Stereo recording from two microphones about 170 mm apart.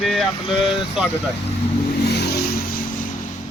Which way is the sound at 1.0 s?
Centre (ahead or behind).